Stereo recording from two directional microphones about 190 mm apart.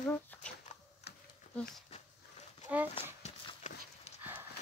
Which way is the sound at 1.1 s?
60° left (ahead or behind).